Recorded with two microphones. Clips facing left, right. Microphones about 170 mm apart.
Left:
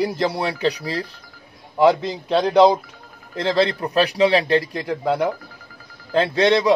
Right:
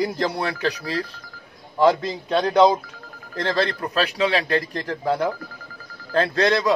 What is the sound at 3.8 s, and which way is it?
Speech, 15° left (ahead or behind).